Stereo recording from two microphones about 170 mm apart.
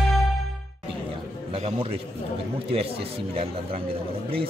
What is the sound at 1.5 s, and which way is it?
Speech, 40° right (ahead or behind).